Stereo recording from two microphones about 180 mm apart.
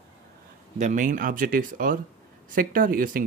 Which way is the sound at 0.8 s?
45° right (ahead or behind).